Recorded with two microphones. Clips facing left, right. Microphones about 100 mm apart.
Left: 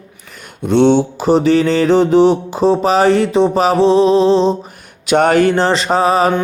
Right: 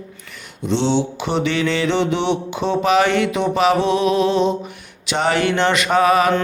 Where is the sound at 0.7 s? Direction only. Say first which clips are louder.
Left 8 dB; 55° left (ahead or behind).